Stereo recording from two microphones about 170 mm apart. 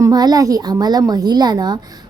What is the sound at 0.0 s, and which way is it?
A woman's voice, 25° right (ahead or behind).